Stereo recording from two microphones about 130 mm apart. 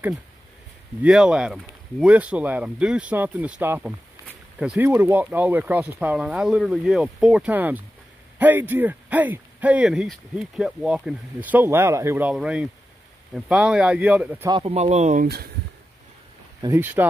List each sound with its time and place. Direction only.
1.0 s speech: 5° right (ahead or behind)
4.8 s speech: 15° right (ahead or behind)
14.6 s speech: 55° right (ahead or behind)
16.6 s speech: 20° right (ahead or behind)